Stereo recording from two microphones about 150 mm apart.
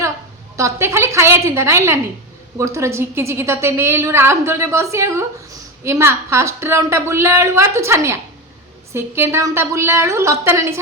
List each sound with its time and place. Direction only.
0.5 s a woman's voice: 20° right (ahead or behind)